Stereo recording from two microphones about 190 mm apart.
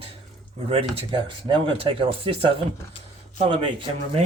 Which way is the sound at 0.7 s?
30° right (ahead or behind).